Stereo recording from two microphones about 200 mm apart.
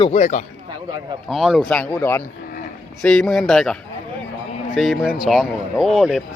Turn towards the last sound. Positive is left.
turn(degrees=0)  # may be behind; listen again after turning